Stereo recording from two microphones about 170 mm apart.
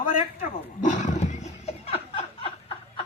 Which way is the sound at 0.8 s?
45° left (ahead or behind).